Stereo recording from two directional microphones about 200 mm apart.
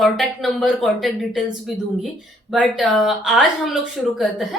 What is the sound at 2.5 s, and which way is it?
Speech, 5° right (ahead or behind).